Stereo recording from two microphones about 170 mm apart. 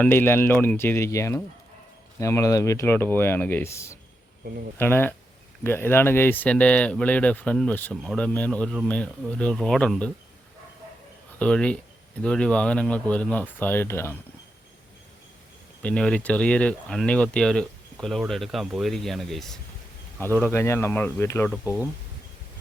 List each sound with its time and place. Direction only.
0.0 s speech: 10° left (ahead or behind)
11.3 s speech: 5° left (ahead or behind)
15.8 s speech: 5° left (ahead or behind)
20.1 s speech: 15° left (ahead or behind)